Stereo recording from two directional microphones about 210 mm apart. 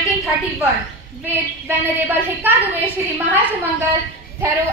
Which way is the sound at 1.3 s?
10° right (ahead or behind).